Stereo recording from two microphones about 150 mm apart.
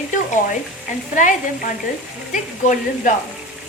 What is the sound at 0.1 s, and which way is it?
Speech, 60° left (ahead or behind).